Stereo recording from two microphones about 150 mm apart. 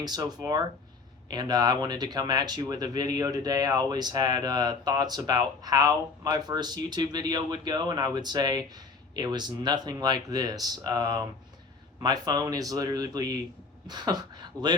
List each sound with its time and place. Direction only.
0.0 s speech: 25° right (ahead or behind)